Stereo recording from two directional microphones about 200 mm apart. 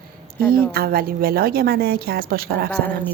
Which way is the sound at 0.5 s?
50° right (ahead or behind).